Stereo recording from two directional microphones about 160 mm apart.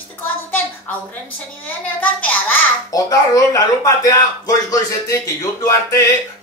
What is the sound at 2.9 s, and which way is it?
Speech, 20° left (ahead or behind).